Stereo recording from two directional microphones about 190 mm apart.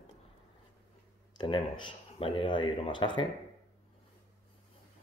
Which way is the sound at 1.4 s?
25° left (ahead or behind).